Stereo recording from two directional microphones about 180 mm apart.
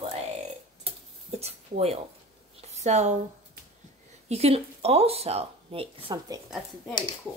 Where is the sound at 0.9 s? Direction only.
30° right (ahead or behind).